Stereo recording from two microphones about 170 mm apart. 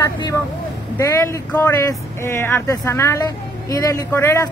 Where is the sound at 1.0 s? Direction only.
15° left (ahead or behind).